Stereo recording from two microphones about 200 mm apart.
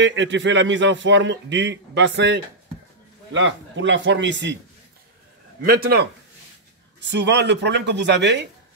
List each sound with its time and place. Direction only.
0.0 s a man's voice: 65° right (ahead or behind)
5.6 s speech: 50° right (ahead or behind)
7.0 s a man's voice: 60° right (ahead or behind)